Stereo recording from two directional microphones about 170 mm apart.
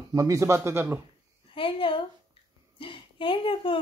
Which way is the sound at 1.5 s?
30° left (ahead or behind).